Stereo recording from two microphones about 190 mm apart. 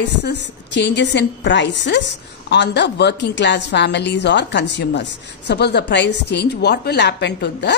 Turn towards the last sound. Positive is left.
turn(degrees=65)  # may be behind; listen again after turning